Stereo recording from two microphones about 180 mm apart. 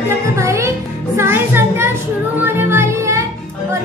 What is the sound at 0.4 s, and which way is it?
Music, 15° right (ahead or behind).